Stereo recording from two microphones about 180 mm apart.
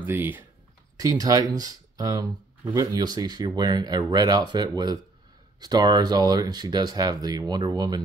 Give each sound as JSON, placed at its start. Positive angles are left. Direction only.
{"t": 0.0, "sound": "speech", "side_deg": -10}